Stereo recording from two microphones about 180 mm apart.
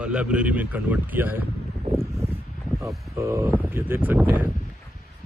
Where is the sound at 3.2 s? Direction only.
15° right (ahead or behind).